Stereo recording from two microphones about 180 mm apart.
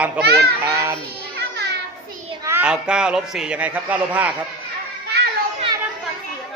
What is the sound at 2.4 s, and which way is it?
Speech, 10° right (ahead or behind).